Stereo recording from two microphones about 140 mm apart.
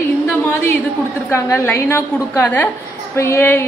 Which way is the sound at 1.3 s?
20° left (ahead or behind).